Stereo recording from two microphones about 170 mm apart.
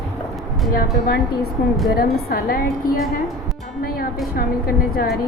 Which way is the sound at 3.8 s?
60° left (ahead or behind).